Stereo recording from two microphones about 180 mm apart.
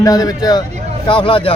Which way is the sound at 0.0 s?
20° left (ahead or behind).